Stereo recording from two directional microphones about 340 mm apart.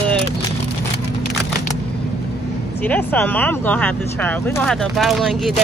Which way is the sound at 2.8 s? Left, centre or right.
Centre.